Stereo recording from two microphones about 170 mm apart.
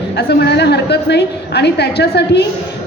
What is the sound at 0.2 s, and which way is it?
A woman's voice, 75° left (ahead or behind).